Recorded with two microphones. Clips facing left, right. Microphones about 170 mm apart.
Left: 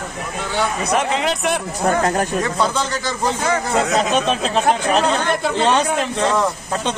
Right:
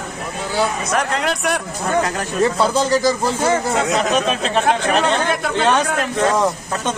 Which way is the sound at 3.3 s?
30° right (ahead or behind).